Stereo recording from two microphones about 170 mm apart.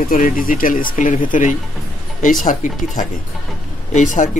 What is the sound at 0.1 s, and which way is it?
Speech, 55° left (ahead or behind).